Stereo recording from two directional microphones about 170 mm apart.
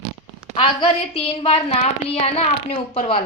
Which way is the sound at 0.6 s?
35° left (ahead or behind).